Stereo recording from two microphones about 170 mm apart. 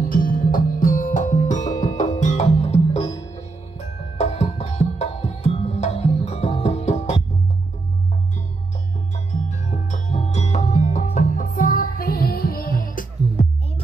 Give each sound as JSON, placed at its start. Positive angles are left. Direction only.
{"t": 0.1, "sound": "music", "side_deg": 55}
{"t": 9.1, "sound": "music", "side_deg": 40}